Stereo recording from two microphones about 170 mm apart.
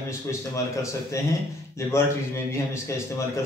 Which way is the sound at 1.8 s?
15° left (ahead or behind).